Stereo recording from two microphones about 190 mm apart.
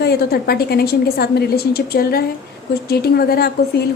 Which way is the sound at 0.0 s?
55° left (ahead or behind).